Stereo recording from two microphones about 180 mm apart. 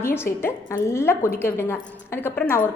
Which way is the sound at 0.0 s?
15° left (ahead or behind).